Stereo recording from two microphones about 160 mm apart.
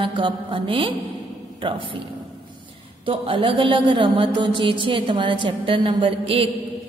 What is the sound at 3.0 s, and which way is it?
A woman's voice, 35° right (ahead or behind).